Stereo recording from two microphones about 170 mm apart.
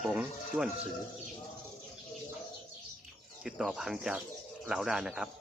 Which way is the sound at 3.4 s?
5° right (ahead or behind).